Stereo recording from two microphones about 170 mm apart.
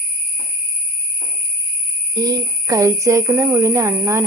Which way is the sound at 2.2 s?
20° right (ahead or behind).